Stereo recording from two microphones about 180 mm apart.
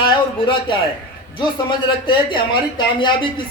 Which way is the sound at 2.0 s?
25° left (ahead or behind).